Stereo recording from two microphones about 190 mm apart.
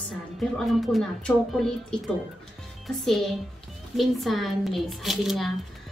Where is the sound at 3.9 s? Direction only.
Centre (ahead or behind).